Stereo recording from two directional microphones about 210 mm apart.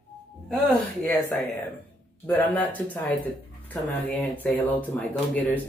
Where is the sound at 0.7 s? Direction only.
10° left (ahead or behind).